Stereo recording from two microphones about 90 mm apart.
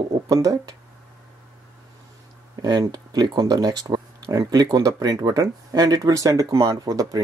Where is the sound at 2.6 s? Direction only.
50° right (ahead or behind).